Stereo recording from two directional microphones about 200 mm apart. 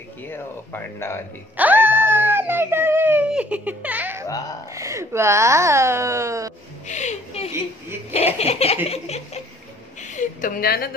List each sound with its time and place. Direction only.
0.3 s speech: 10° left (ahead or behind)
1.6 s speech: 10° right (ahead or behind)
6.9 s a woman's voice: 35° left (ahead or behind)
8.4 s laughter: 30° left (ahead or behind)
10.0 s a woman's voice: 40° left (ahead or behind)